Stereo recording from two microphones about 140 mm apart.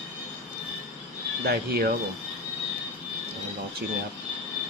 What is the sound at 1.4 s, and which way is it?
Speech, 90° right.